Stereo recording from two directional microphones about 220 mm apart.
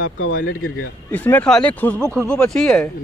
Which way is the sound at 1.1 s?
10° left (ahead or behind).